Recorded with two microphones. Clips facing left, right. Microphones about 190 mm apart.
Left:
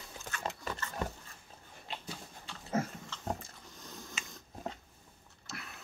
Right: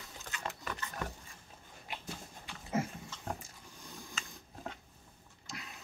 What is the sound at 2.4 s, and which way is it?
Dog, 10° right (ahead or behind).